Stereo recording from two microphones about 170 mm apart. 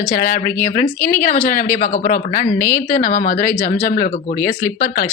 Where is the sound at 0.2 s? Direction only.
50° left (ahead or behind).